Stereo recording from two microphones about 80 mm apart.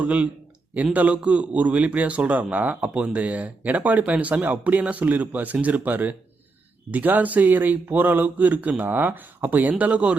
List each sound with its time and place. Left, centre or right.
0.0 s a man's voice: centre